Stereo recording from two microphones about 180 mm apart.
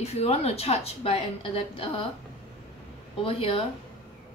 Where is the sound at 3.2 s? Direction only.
30° left (ahead or behind).